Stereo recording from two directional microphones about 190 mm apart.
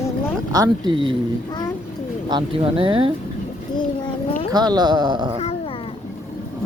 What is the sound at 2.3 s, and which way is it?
Speech, 25° right (ahead or behind).